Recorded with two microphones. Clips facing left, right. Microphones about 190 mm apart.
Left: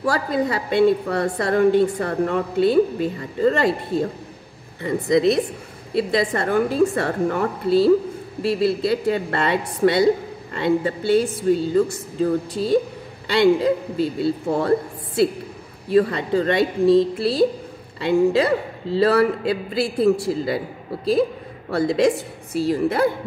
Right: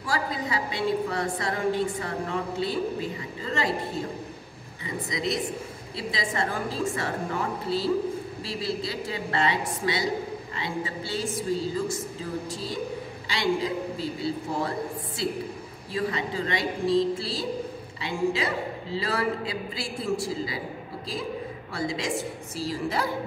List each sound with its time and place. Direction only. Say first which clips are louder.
0.0 s a man's voice: left 9 dB; 60° left (ahead or behind)
4.8 s a man's voice: left 13 dB; 60° left (ahead or behind)
15.9 s a man's voice: left 11 dB; 60° left (ahead or behind)